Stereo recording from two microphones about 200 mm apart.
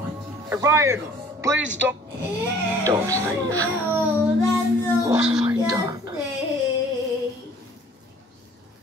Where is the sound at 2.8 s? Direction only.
15° right (ahead or behind).